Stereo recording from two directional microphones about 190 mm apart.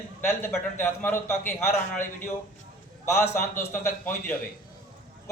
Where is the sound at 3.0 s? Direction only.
15° left (ahead or behind).